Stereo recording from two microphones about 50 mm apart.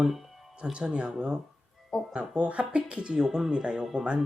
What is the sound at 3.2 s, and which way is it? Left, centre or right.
Speech, centre.